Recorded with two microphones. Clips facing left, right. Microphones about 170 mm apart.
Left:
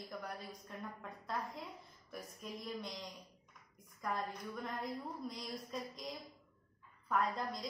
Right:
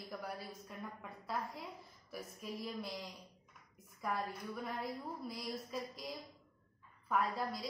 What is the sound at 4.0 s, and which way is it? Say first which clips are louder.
A woman's voice: right 1 dB; 5° right (ahead or behind).